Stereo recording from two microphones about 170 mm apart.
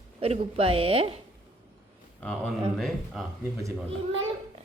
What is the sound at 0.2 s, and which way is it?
A woman's voice, 35° right (ahead or behind).